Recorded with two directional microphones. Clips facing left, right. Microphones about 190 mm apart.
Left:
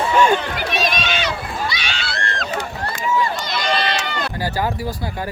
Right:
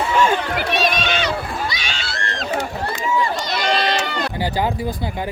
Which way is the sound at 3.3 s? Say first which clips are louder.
Right 1 dB; 40° right (ahead or behind).